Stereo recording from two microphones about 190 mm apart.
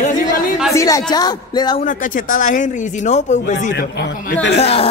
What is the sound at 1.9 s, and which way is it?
Speech, 45° left (ahead or behind).